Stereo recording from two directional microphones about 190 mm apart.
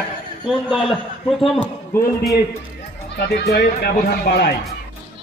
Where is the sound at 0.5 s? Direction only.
Centre (ahead or behind).